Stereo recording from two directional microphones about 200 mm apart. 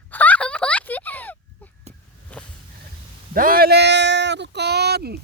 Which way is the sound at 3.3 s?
45° right (ahead or behind).